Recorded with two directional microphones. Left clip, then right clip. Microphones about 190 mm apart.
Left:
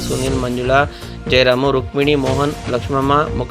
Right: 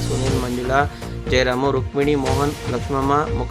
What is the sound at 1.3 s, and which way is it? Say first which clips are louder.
A man's voice: left 5 dB; 10° left (ahead or behind).